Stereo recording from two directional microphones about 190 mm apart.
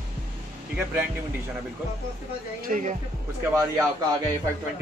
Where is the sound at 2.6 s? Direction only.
45° right (ahead or behind).